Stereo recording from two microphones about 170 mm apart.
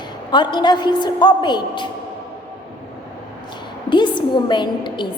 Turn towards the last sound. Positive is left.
turn(degrees=25)  # may be behind; listen again after turning